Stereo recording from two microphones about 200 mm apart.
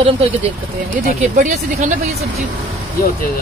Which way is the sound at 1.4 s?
40° right (ahead or behind).